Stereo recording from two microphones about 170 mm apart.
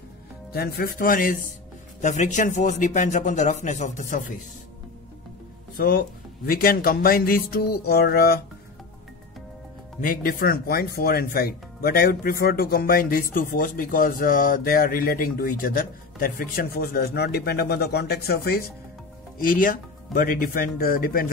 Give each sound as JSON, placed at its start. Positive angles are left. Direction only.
{"t": 0.5, "sound": "speech", "side_deg": 65}
{"t": 5.8, "sound": "speech", "side_deg": 60}
{"t": 10.0, "sound": "speech", "side_deg": 60}